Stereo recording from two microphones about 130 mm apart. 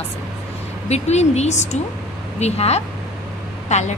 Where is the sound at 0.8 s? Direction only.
55° left (ahead or behind).